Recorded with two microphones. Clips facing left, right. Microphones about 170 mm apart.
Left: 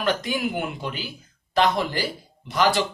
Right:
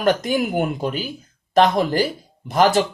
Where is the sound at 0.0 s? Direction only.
45° right (ahead or behind).